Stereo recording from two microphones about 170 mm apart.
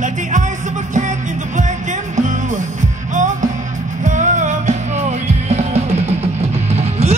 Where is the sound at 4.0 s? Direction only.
45° right (ahead or behind).